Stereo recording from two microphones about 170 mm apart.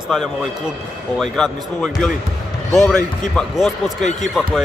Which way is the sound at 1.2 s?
Centre (ahead or behind).